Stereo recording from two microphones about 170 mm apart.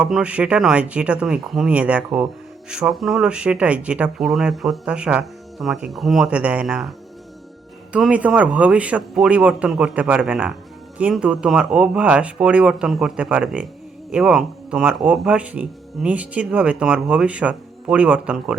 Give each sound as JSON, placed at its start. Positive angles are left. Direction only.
{"t": 0.0, "sound": "speech", "side_deg": -5}
{"t": 7.9, "sound": "speech", "side_deg": -5}